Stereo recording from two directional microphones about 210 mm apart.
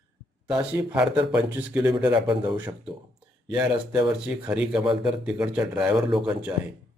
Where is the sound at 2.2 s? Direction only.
25° right (ahead or behind).